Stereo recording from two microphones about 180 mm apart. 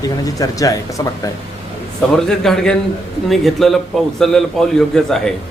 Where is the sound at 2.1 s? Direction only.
5° left (ahead or behind).